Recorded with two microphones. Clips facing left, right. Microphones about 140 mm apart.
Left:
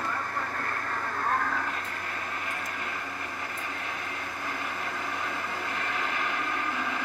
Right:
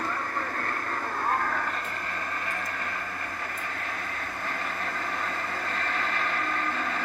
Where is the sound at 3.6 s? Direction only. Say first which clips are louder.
Right 1 dB; 15° left (ahead or behind).